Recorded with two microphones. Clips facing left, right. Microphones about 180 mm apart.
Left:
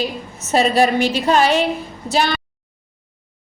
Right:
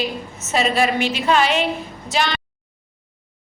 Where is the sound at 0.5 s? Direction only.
35° left (ahead or behind).